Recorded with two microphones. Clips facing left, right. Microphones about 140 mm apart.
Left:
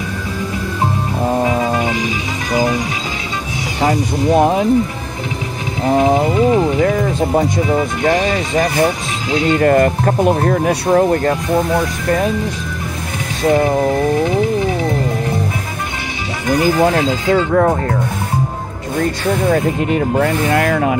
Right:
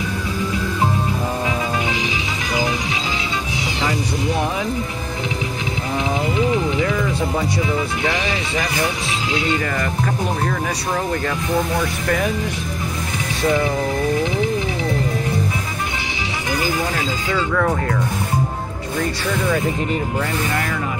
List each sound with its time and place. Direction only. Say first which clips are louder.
1.4 s music: left 6 dB; 40° left (ahead or behind)
3.8 s speech: left 8 dB; 45° left (ahead or behind)
5.9 s speech: left 10 dB; 45° left (ahead or behind)
13.4 s speech: left 6 dB; 50° left (ahead or behind)
16.4 s speech: left 10 dB; 50° left (ahead or behind)
18.9 s speech: left 5 dB; 50° left (ahead or behind)